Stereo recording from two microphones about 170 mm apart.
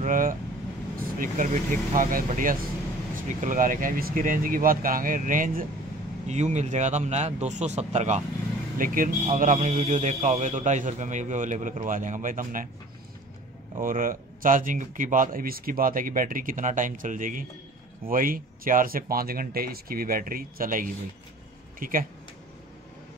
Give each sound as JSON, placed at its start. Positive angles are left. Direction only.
{"t": 0.0, "sound": "a man's voice", "side_deg": -50}
{"t": 6.2, "sound": "a man's voice", "side_deg": -40}
{"t": 8.7, "sound": "a man's voice", "side_deg": -55}
{"t": 13.7, "sound": "a man's voice", "side_deg": -55}